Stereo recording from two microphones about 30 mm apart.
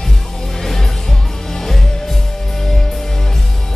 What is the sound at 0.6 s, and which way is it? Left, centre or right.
Music, centre.